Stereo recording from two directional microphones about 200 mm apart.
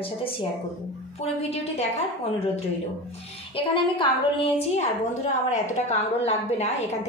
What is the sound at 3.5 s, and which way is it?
A woman's voice, 25° left (ahead or behind).